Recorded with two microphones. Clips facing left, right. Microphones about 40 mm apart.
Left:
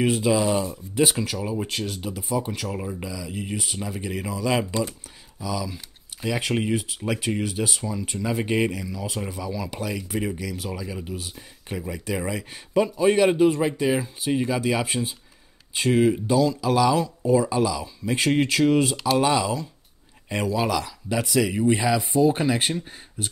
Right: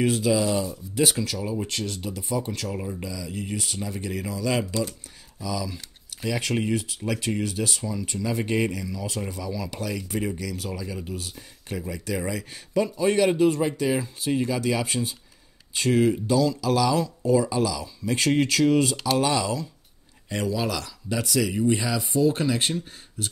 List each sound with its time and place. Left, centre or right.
0.0 s speech: centre